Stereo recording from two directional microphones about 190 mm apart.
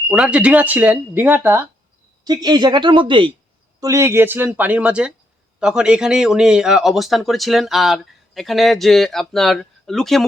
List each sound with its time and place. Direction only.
0.1 s speech: 5° right (ahead or behind)